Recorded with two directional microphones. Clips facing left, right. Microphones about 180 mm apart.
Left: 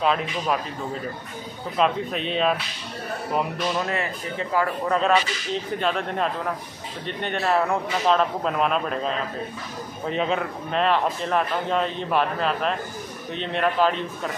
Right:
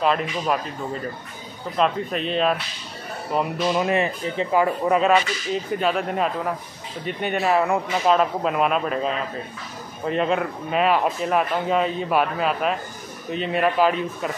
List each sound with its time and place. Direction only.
0.0 s speech: centre (ahead or behind)
1.8 s speech: centre (ahead or behind)
3.7 s speech: 20° right (ahead or behind)